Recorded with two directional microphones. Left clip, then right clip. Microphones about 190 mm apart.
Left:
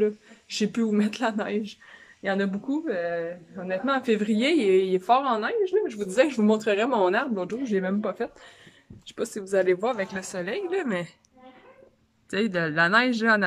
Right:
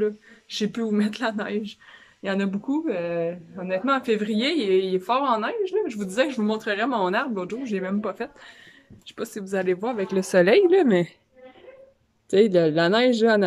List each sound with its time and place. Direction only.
0.0 s speech: 5° left (ahead or behind)
10.3 s a woman's voice: 60° right (ahead or behind)
10.7 s a woman's voice: 20° right (ahead or behind)
12.3 s speech: 5° right (ahead or behind)